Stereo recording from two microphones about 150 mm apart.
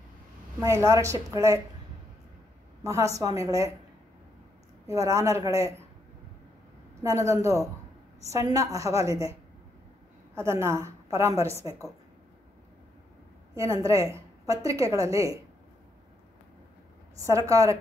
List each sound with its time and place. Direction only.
0.6 s a woman's voice: 20° right (ahead or behind)
2.8 s a woman's voice: 20° right (ahead or behind)
4.8 s a woman's voice: 20° right (ahead or behind)
7.0 s a woman's voice: 20° right (ahead or behind)
13.7 s a woman's voice: 20° right (ahead or behind)
17.2 s a woman's voice: 20° right (ahead or behind)